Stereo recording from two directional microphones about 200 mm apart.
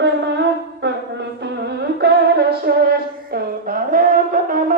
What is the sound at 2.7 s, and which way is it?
Music, 55° right (ahead or behind).